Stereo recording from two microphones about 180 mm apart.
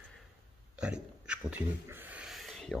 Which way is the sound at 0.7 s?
5° right (ahead or behind).